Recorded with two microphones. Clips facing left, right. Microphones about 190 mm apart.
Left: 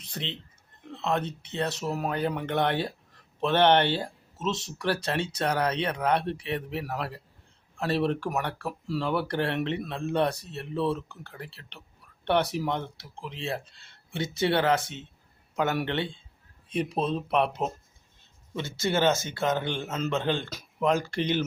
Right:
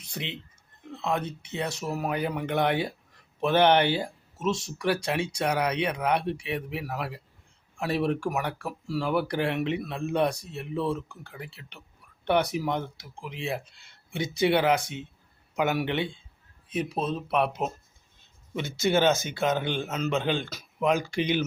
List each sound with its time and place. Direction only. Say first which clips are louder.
0.0 s speech: even; 10° right (ahead or behind)
18.5 s speech: right 3 dB; 15° right (ahead or behind)